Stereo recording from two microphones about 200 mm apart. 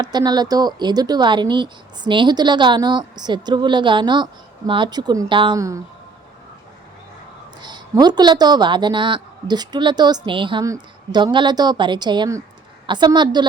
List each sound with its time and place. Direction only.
0.0 s speech: 20° right (ahead or behind)
7.6 s speech: 20° right (ahead or behind)